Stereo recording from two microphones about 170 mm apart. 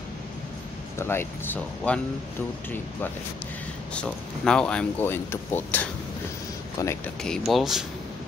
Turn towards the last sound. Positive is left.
turn(degrees=0)  # may be behind; listen again after turning